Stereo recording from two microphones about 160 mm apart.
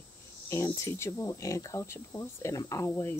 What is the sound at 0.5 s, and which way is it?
Speech, 15° left (ahead or behind).